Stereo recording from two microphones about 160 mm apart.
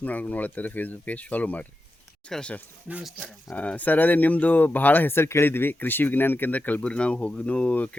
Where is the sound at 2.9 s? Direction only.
5° right (ahead or behind).